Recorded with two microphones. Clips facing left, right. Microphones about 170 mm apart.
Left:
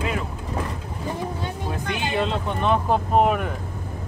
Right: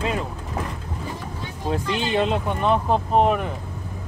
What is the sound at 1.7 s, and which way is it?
Speech, 20° right (ahead or behind).